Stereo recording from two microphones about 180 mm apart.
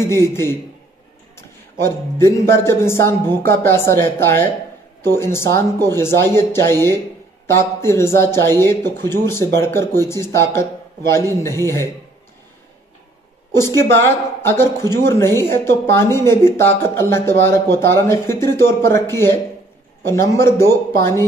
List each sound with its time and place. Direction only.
0.0 s speech: 15° left (ahead or behind)
13.6 s speech: 15° left (ahead or behind)